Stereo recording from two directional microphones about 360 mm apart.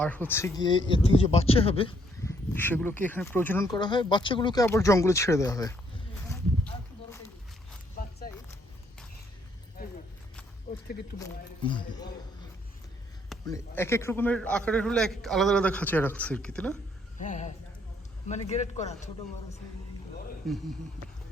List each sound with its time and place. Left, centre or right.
0.0 s speech: centre
6.2 s a sound: centre
11.2 s speech: centre
13.3 s a man's voice: centre
17.2 s speech: centre
20.4 s a man's voice: centre